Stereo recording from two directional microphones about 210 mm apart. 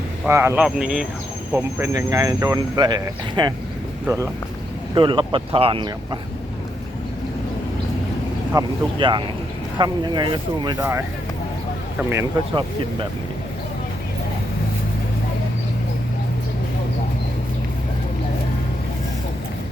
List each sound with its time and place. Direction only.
0.3 s speech: 10° right (ahead or behind)
4.9 s speech: 25° right (ahead or behind)
8.5 s speech: 20° right (ahead or behind)